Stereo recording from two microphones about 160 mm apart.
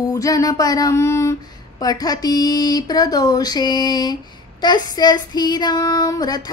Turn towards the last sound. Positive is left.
turn(degrees=25)  # may be behind; listen again after turning